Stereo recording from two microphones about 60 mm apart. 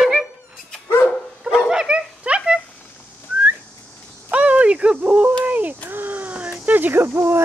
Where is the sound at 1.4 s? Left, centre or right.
Centre.